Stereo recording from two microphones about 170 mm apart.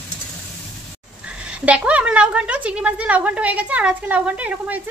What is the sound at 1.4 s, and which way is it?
A woman's voice, 10° right (ahead or behind).